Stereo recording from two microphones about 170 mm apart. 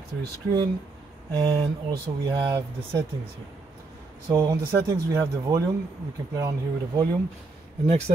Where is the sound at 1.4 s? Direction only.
25° right (ahead or behind).